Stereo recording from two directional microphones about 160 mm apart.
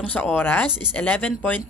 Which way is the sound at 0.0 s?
10° left (ahead or behind).